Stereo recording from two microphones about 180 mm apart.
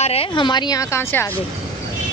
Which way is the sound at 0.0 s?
35° left (ahead or behind).